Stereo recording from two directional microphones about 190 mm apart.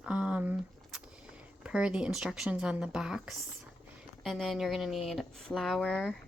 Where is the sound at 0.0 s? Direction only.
5° right (ahead or behind).